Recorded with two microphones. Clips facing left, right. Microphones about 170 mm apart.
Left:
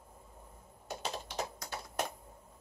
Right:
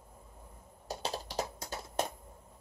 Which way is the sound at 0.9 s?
35° right (ahead or behind).